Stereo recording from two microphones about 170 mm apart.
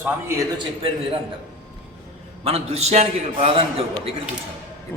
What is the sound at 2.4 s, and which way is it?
A man's voice, 35° right (ahead or behind).